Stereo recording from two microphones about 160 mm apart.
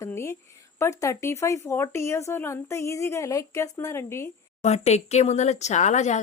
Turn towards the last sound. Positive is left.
turn(degrees=50)  # may be behind; listen again after turning